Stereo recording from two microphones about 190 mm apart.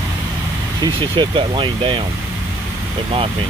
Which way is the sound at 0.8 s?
25° right (ahead or behind).